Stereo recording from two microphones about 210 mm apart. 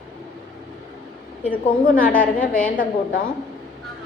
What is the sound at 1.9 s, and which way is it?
A woman's voice, 40° left (ahead or behind).